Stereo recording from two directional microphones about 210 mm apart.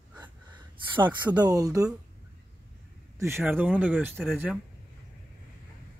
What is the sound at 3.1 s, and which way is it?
Speech, 10° right (ahead or behind).